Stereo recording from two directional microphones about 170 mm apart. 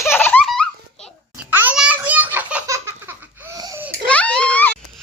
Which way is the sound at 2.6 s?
15° right (ahead or behind).